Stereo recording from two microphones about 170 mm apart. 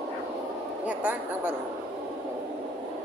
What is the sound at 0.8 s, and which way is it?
Speech, 10° right (ahead or behind).